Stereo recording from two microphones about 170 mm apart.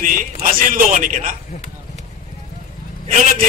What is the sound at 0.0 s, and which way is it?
A man's voice, 50° right (ahead or behind).